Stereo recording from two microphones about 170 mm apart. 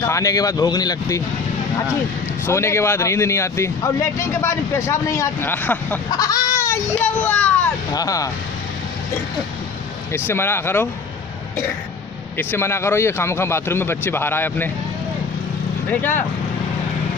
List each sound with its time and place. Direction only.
0.0 s speech: 20° left (ahead or behind)
2.4 s speech: 15° left (ahead or behind)
6.0 s a child's voice: 20° left (ahead or behind)
7.9 s speech: 20° left (ahead or behind)
10.1 s speech: 15° left (ahead or behind)
12.4 s speech: 15° left (ahead or behind)
15.9 s speech: 10° left (ahead or behind)